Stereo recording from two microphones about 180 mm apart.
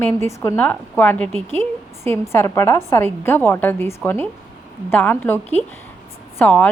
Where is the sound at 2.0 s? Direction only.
15° left (ahead or behind).